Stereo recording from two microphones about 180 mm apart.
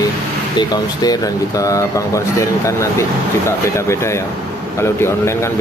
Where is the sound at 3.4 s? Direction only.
15° left (ahead or behind).